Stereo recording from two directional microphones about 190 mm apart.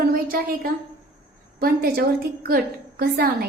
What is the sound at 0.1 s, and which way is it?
A woman's voice, 50° right (ahead or behind).